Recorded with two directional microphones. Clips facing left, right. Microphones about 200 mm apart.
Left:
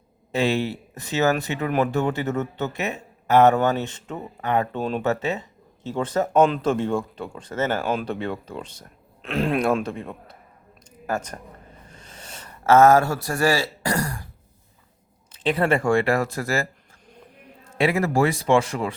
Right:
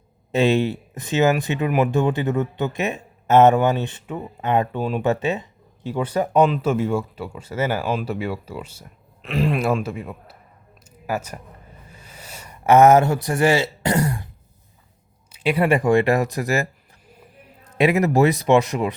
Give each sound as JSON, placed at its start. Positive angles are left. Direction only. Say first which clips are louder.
{"t": 0.3, "sound": "speech", "louder": "right 4 dB", "side_deg": -20}
{"t": 4.8, "sound": "speech", "louder": "right 2 dB", "side_deg": -10}
{"t": 11.9, "sound": "a sound", "louder": "right 2 dB", "side_deg": -10}
{"t": 15.3, "sound": "speech", "louder": "right 2 dB", "side_deg": -10}